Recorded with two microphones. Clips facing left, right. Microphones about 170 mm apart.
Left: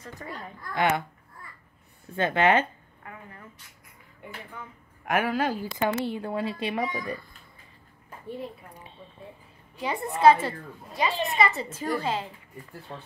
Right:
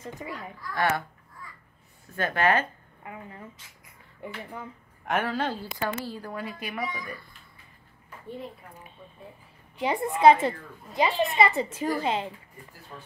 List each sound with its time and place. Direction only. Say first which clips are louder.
0.2 s speech: right 1 dB; 10° right (ahead or behind)
0.7 s speech: left 2 dB; 20° left (ahead or behind)
2.1 s speech: left 2 dB; 25° left (ahead or behind)
3.0 s a woman's voice: right 3 dB; 20° right (ahead or behind)
5.0 s speech: left 2 dB; 10° left (ahead or behind); by 7.2 s 30° left (ahead or behind)
8.3 s a woman's voice: left 2 dB; centre (ahead or behind)
9.8 s a woman's voice: right 2 dB; 25° right (ahead or behind)